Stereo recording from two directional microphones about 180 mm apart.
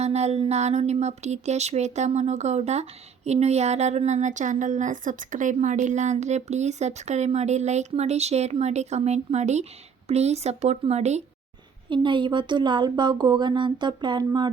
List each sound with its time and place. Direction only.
0.0 s a woman's voice: 40° right (ahead or behind)
11.9 s speech: 25° right (ahead or behind)